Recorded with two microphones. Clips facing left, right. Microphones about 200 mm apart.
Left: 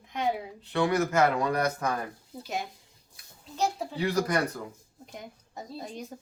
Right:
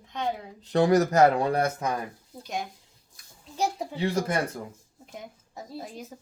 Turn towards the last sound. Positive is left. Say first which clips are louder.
# even
turn(degrees=-5)  # may be behind; listen again after turning